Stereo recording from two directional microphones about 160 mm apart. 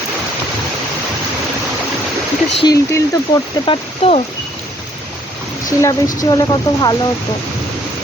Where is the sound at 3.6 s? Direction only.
40° left (ahead or behind).